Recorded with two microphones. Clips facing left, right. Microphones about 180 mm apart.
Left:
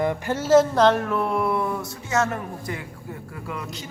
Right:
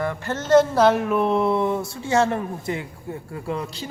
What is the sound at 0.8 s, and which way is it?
Speech, 10° right (ahead or behind).